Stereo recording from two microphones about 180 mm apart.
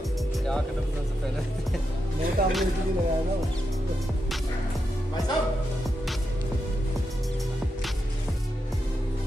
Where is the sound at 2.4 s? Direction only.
55° right (ahead or behind).